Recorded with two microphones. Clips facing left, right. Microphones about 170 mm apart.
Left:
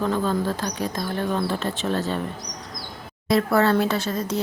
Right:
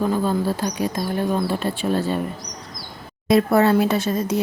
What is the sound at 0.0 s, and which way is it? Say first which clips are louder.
Speech: right 2 dB; 10° right (ahead or behind).